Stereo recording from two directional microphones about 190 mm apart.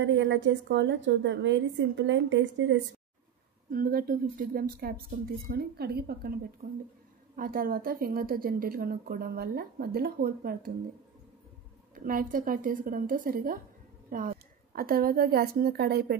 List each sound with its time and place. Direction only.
0.0 s a woman's voice: 70° right (ahead or behind)
3.7 s a woman's voice: 50° right (ahead or behind)
11.9 s a woman's voice: 45° right (ahead or behind)